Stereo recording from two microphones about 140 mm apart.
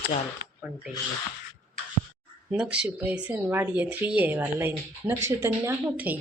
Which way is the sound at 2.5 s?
10° right (ahead or behind).